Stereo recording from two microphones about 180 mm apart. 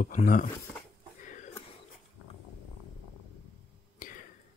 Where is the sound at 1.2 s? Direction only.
45° left (ahead or behind).